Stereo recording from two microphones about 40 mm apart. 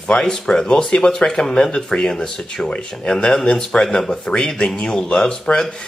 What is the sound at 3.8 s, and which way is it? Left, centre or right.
Speech, centre.